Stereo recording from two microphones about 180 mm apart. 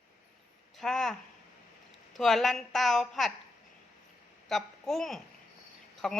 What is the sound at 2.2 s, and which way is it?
A woman's voice, centre (ahead or behind).